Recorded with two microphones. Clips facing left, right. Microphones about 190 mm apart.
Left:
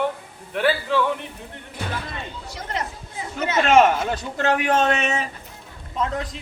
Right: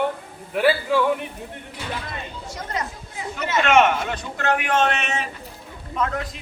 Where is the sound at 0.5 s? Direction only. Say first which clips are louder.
Right 2 dB; 10° right (ahead or behind).